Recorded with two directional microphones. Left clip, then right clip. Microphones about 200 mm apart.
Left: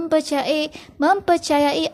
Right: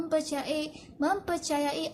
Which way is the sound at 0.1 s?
40° left (ahead or behind).